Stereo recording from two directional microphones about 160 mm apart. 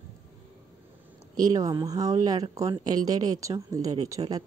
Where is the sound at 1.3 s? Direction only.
25° right (ahead or behind).